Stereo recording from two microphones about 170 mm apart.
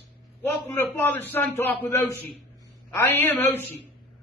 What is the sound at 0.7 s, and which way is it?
A man's voice, 10° left (ahead or behind).